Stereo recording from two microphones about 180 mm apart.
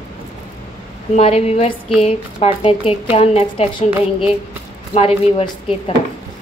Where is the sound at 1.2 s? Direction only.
35° left (ahead or behind).